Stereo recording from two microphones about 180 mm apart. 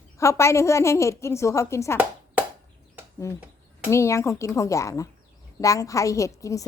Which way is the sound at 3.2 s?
15° left (ahead or behind).